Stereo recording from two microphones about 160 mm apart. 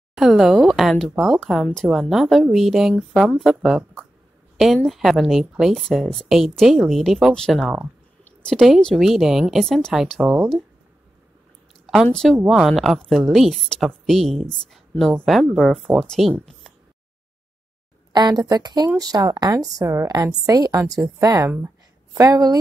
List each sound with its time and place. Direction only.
0.1 s speech: centre (ahead or behind)
11.8 s speech: centre (ahead or behind)
18.1 s a woman's voice: 25° right (ahead or behind)